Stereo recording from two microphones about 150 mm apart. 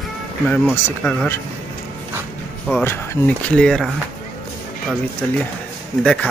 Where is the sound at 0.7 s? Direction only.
10° left (ahead or behind).